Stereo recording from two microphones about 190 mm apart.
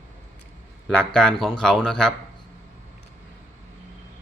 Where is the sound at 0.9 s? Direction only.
5° left (ahead or behind).